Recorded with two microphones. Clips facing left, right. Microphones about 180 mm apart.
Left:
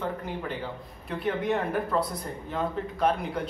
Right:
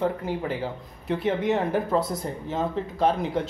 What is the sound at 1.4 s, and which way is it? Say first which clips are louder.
Speech: right 3 dB; 25° right (ahead or behind).